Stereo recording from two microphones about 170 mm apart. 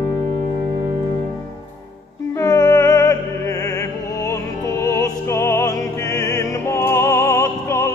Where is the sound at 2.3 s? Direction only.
20° left (ahead or behind).